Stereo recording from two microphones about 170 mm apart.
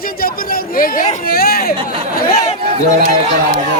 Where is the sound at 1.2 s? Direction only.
60° left (ahead or behind).